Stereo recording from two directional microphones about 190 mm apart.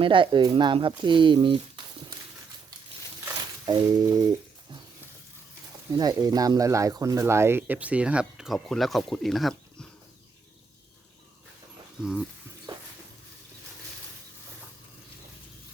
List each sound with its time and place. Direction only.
0.0 s speech: 25° right (ahead or behind)
3.7 s a sound: 20° right (ahead or behind)
5.9 s speech: 20° right (ahead or behind); by 9.6 s centre (ahead or behind)